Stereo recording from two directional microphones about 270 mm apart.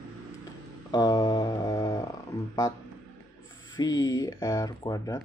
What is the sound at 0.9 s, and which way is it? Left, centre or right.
Speech, centre.